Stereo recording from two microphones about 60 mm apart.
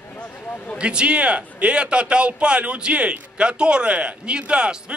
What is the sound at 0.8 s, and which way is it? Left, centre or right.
A man's voice, centre.